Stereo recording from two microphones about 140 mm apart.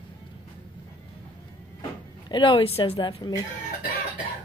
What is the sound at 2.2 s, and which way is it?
Speech, 35° left (ahead or behind).